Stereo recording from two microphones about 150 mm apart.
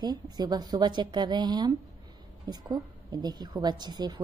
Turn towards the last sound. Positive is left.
turn(degrees=-30)  # may be behind; listen again after turning